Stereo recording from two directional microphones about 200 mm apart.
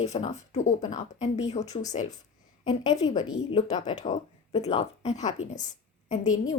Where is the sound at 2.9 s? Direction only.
20° left (ahead or behind); by 6.5 s 35° left (ahead or behind).